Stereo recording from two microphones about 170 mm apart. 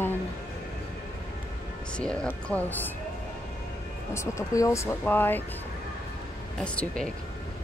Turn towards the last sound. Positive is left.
turn(degrees=5)  # may be behind; listen again after turning